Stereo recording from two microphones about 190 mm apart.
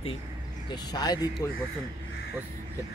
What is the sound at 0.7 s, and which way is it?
Speech, 20° left (ahead or behind).